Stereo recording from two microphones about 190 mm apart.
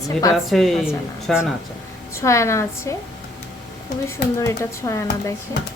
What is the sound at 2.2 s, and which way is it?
Speech, 15° left (ahead or behind).